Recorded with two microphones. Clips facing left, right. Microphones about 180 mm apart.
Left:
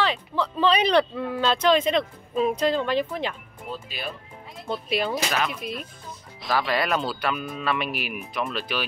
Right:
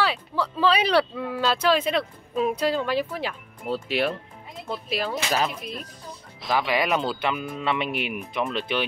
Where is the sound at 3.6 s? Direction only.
75° right (ahead or behind).